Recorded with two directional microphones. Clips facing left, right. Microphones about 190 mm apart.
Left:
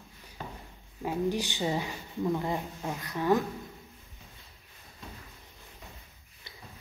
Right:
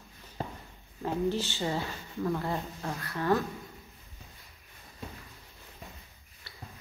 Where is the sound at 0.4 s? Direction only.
35° right (ahead or behind).